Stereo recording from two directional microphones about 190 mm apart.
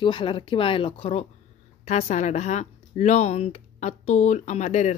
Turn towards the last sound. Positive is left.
turn(degrees=35)  # may be behind; listen again after turning